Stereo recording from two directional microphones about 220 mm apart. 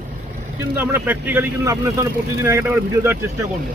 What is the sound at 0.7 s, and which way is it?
Speech, 10° right (ahead or behind).